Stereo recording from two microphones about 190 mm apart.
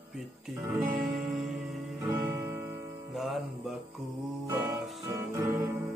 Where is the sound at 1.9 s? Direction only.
15° right (ahead or behind).